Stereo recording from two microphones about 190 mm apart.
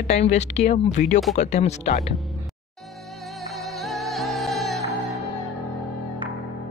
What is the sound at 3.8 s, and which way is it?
Music, centre (ahead or behind).